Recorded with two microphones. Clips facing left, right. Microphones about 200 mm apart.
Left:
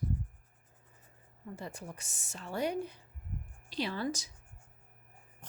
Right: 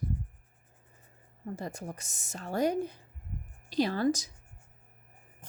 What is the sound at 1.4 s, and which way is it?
A woman's voice, 40° right (ahead or behind).